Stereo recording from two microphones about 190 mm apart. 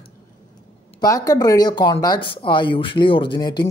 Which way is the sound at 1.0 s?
20° left (ahead or behind).